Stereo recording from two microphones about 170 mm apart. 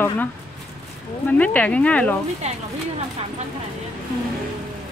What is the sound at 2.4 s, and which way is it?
Speech, 40° right (ahead or behind).